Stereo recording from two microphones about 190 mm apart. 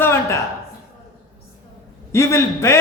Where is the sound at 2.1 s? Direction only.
15° left (ahead or behind).